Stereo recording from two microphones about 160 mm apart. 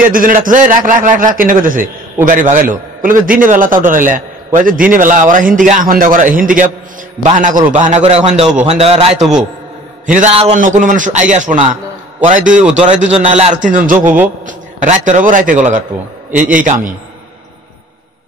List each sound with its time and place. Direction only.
0.0 s a man's voice: 60° right (ahead or behind); by 9.1 s 40° right (ahead or behind)
10.0 s a man's voice: 50° right (ahead or behind)
10.3 s a man's voice: 40° right (ahead or behind)
10.6 s a man's voice: 55° right (ahead or behind)
12.5 s a man's voice: 5° right (ahead or behind)
13.0 s a man's voice: 40° right (ahead or behind)
13.9 s a man's voice: 10° right (ahead or behind)
14.4 s a man's voice: 50° right (ahead or behind)